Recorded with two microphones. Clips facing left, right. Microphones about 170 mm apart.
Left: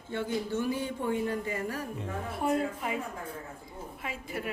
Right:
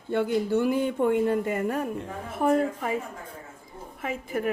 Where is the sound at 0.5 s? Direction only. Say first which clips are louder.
Right 7 dB; 60° right (ahead or behind).